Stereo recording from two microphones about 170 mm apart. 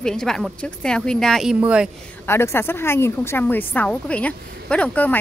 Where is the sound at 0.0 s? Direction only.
5° left (ahead or behind).